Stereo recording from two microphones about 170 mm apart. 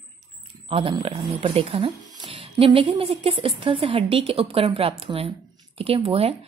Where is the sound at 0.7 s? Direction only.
30° right (ahead or behind).